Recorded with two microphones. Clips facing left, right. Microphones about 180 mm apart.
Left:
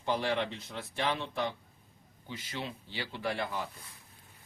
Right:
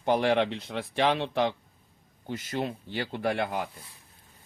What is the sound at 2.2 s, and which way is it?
Speech, 50° right (ahead or behind).